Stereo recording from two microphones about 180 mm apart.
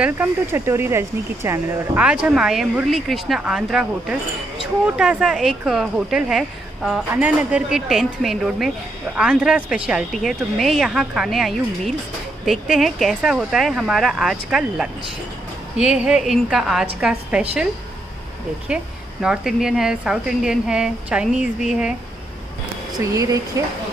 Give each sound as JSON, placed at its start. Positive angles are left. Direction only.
{"t": 0.0, "sound": "speech", "side_deg": -10}
{"t": 18.7, "sound": "speech", "side_deg": -5}
{"t": 23.1, "sound": "speech", "side_deg": -20}